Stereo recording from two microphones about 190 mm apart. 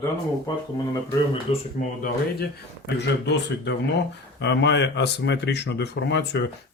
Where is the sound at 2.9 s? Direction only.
65° left (ahead or behind).